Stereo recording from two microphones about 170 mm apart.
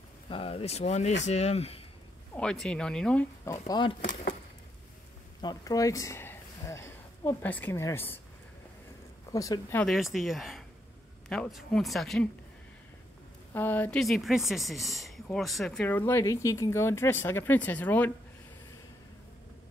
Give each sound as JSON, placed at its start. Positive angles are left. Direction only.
{"t": 0.3, "sound": "speech", "side_deg": 35}
{"t": 2.3, "sound": "speech", "side_deg": 5}
{"t": 3.4, "sound": "speech", "side_deg": 20}
{"t": 4.0, "sound": "a sound", "side_deg": 90}
{"t": 5.4, "sound": "speech", "side_deg": 25}
{"t": 9.3, "sound": "speech", "side_deg": 20}
{"t": 9.8, "sound": "speech", "side_deg": 0}
{"t": 13.5, "sound": "speech", "side_deg": 10}